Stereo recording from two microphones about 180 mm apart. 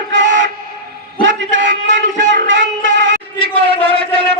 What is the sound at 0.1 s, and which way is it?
Music, 90° right.